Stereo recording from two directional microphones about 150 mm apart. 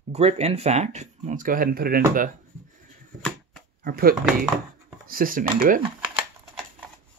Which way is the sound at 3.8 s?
80° right.